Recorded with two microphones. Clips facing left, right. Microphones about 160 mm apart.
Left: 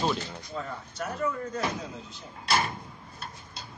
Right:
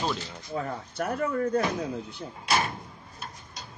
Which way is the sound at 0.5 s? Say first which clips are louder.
Right 5 dB; 60° right (ahead or behind).